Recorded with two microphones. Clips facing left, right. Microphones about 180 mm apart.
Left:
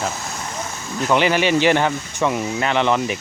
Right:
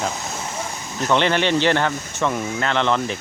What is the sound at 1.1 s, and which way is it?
Speech, 10° left (ahead or behind).